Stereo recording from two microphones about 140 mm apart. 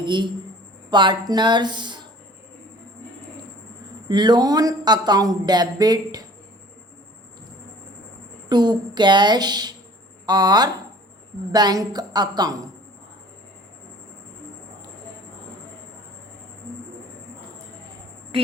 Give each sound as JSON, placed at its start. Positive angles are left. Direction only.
{"t": 0.0, "sound": "a woman's voice", "side_deg": -35}
{"t": 4.1, "sound": "speech", "side_deg": -30}
{"t": 8.4, "sound": "a woman's voice", "side_deg": -30}